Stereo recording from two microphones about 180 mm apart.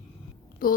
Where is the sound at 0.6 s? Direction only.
50° left (ahead or behind).